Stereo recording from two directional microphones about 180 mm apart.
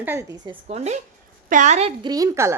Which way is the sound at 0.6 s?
35° right (ahead or behind).